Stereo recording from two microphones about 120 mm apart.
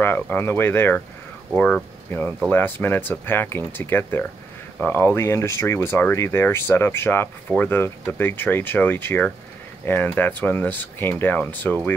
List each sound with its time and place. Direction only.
0.0 s speech: 20° left (ahead or behind)